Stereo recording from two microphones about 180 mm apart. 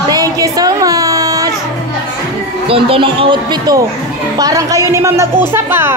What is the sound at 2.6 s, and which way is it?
A woman's voice, 30° right (ahead or behind).